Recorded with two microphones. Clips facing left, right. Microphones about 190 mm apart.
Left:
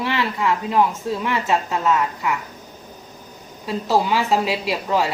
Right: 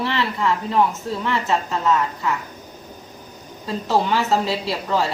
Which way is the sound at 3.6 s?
5° left (ahead or behind).